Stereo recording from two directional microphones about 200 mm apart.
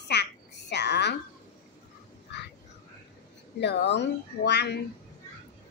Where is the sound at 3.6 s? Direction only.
60° left (ahead or behind).